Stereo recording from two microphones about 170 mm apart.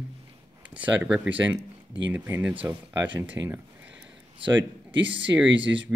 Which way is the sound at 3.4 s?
10° right (ahead or behind).